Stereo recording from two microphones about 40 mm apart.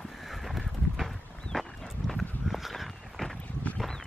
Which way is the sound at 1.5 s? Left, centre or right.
Centre.